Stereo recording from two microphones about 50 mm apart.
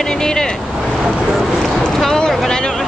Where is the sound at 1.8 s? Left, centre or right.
Centre.